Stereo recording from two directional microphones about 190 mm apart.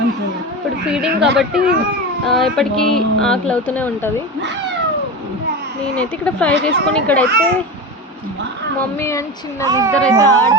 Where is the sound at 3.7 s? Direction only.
10° left (ahead or behind).